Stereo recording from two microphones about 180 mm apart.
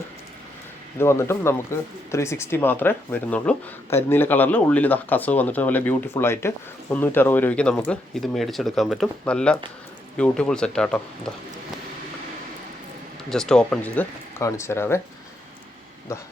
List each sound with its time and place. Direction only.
0.9 s speech: 15° left (ahead or behind)
13.3 s speech: 5° left (ahead or behind)
16.1 s speech: 15° left (ahead or behind)